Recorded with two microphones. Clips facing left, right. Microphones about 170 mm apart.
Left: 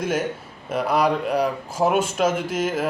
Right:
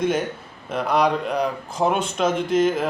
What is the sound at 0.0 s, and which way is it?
Speech, 5° left (ahead or behind).